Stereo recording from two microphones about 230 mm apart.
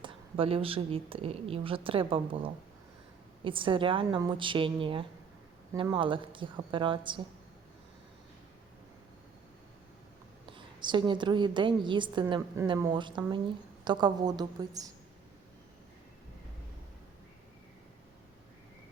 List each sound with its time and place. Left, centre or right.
0.0 s a woman's voice: right
10.4 s a woman's voice: right